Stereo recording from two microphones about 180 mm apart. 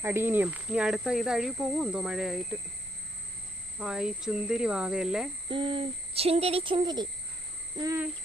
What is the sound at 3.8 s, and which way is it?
Speech, 5° right (ahead or behind).